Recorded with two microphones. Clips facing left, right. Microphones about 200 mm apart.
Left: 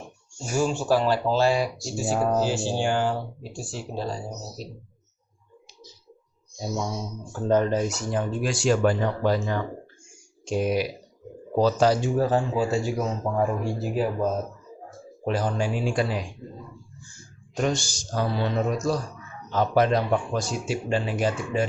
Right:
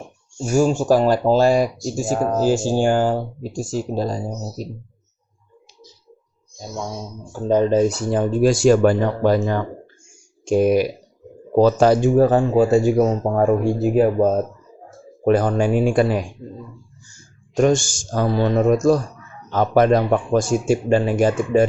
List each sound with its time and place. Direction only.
0.5 s speech: 45° right (ahead or behind)
7.3 s speech: 15° right (ahead or behind); by 16.2 s 55° right (ahead or behind)
17.6 s speech: 50° right (ahead or behind)